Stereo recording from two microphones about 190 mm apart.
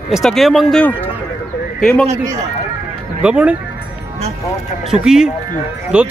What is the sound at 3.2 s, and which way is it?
Speech, 5° right (ahead or behind).